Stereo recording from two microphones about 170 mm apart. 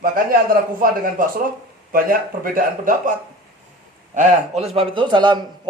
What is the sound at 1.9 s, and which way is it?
A man's voice, 55° right (ahead or behind).